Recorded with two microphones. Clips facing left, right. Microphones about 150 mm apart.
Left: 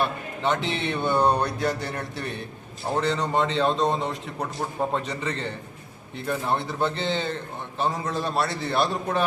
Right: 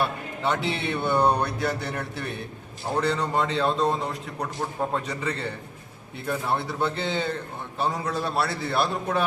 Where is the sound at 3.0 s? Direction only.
10° right (ahead or behind).